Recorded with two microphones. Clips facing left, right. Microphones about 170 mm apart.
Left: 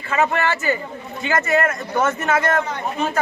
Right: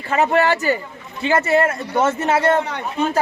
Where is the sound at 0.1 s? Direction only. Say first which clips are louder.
Right 3 dB; 35° right (ahead or behind).